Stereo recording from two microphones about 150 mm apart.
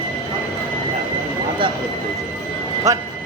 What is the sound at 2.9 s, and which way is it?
Speech, 20° right (ahead or behind).